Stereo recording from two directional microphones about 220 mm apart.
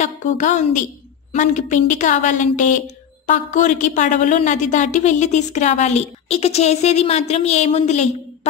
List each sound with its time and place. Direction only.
0.0 s a woman's voice: 35° left (ahead or behind)